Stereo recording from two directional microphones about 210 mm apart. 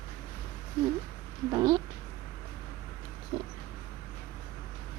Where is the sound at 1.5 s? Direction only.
20° right (ahead or behind).